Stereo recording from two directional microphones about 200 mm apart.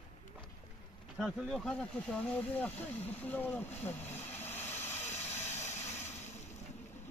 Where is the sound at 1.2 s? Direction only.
Centre (ahead or behind).